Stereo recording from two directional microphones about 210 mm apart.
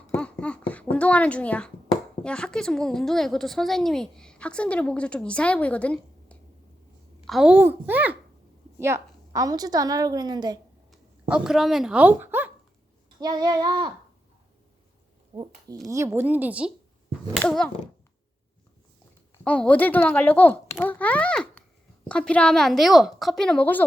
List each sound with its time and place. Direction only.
0.1 s a sound: 5° left (ahead or behind)
2.2 s a woman's voice: 5° left (ahead or behind); by 10.6 s 20° right (ahead or behind)
10.9 s speech: 5° right (ahead or behind)
13.1 s a sound: 20° right (ahead or behind)
15.3 s a woman's voice: 20° right (ahead or behind); by 17.7 s 5° left (ahead or behind)
19.5 s a child's voice: 5° left (ahead or behind)